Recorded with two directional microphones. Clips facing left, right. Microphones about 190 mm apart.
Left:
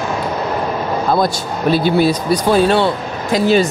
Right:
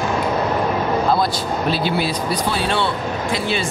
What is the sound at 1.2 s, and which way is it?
Speech, 50° left (ahead or behind).